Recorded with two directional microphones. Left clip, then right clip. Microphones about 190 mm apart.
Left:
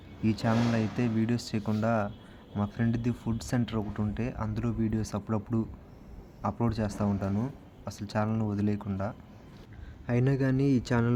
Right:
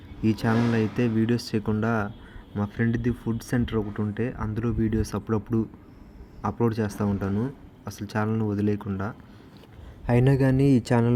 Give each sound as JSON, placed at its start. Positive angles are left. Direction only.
{"t": 0.2, "sound": "speech", "side_deg": -15}
{"t": 10.1, "sound": "speech", "side_deg": -20}